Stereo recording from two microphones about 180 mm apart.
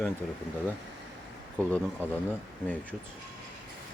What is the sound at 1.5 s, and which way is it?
Speech, 10° left (ahead or behind).